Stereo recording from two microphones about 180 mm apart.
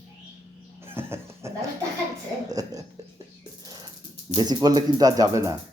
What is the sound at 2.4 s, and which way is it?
Speech, 20° right (ahead or behind).